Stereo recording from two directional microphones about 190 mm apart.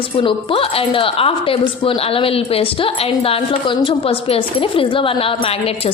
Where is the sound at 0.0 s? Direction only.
25° left (ahead or behind).